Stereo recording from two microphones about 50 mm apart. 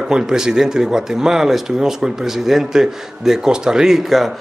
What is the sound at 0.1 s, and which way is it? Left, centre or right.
Speech, centre.